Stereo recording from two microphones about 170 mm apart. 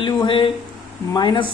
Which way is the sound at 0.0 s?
30° left (ahead or behind).